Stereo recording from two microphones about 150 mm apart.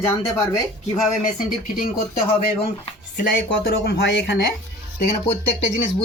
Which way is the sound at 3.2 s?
80° left.